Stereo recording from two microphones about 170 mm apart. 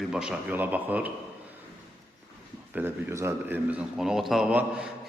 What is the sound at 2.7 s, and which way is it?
A man's voice, 10° right (ahead or behind).